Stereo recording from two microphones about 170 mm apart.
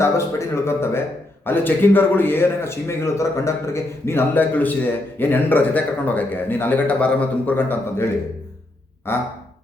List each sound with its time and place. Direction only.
0.0 s a man's voice: 15° left (ahead or behind)